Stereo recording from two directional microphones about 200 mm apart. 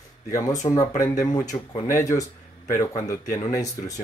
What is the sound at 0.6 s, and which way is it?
Speech, 15° left (ahead or behind).